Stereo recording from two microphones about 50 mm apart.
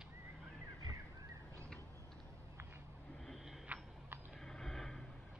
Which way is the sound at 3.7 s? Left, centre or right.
Right.